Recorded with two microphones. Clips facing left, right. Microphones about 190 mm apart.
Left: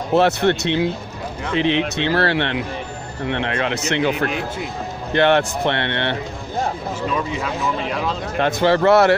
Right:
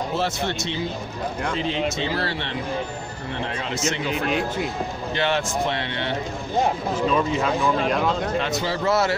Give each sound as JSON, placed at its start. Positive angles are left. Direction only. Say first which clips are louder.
{"t": 0.1, "sound": "speech", "louder": "left 9 dB", "side_deg": 65}
{"t": 8.4, "sound": "speech", "louder": "left 8 dB", "side_deg": 55}